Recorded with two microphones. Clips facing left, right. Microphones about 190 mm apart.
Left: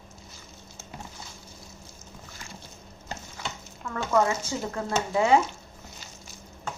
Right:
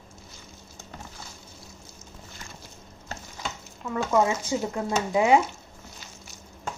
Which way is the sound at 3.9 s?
15° right (ahead or behind).